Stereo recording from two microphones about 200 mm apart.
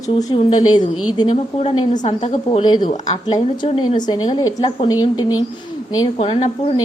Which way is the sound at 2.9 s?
35° left (ahead or behind).